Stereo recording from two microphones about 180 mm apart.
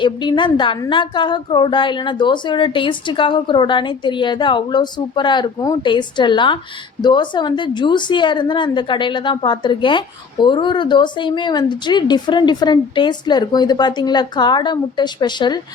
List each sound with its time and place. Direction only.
0.0 s a woman's voice: 25° left (ahead or behind)